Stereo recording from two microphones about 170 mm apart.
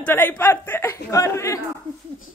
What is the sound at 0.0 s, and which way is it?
Speech, 10° left (ahead or behind).